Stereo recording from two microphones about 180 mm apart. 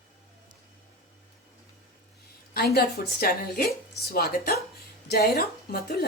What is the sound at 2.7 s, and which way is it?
A woman's voice, 60° left (ahead or behind).